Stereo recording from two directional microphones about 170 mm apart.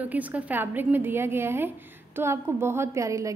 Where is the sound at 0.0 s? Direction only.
10° right (ahead or behind).